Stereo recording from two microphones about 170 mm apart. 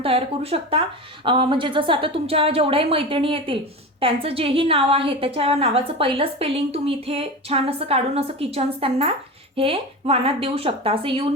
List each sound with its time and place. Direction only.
0.0 s a woman's voice: 35° right (ahead or behind)